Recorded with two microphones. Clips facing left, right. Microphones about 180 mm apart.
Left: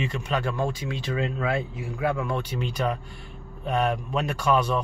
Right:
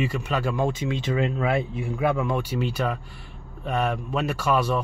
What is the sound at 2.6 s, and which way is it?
Speech, 5° right (ahead or behind).